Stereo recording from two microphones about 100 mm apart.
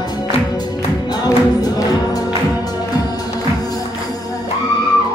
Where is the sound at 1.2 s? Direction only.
40° left (ahead or behind).